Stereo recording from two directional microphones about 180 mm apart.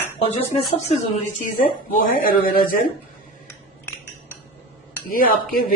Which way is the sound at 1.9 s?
50° left (ahead or behind).